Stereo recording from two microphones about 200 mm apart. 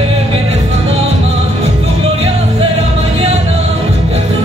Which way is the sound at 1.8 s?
30° right (ahead or behind).